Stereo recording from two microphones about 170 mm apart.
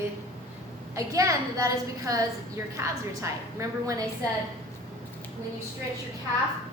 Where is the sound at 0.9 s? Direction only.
20° right (ahead or behind).